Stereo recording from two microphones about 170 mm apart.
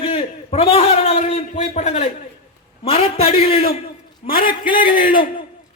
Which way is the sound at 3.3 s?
60° left (ahead or behind).